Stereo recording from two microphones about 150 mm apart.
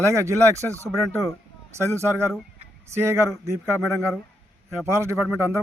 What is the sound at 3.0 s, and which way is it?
A man's voice, 15° right (ahead or behind).